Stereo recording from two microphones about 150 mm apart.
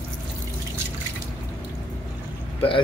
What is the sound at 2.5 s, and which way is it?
Speech, 35° left (ahead or behind).